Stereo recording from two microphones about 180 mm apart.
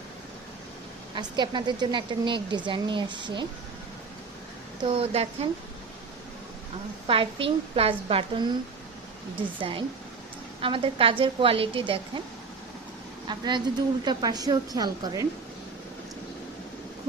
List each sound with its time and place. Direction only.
1.1 s a woman's voice: 25° right (ahead or behind)
4.8 s a woman's voice: 30° right (ahead or behind)
7.1 s a woman's voice: 30° right (ahead or behind)
9.6 s a woman's voice: 30° right (ahead or behind)
13.2 s a woman's voice: 25° right (ahead or behind)